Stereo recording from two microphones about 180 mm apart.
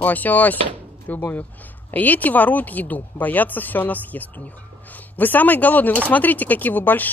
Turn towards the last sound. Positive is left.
turn(degrees=10)  # may be behind; listen again after turning